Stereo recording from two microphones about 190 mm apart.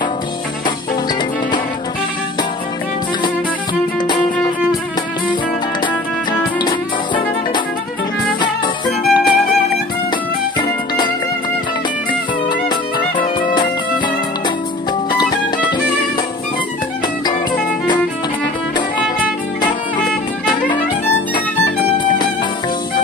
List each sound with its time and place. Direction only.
8.4 s music: 25° left (ahead or behind)
12.1 s music: 25° left (ahead or behind)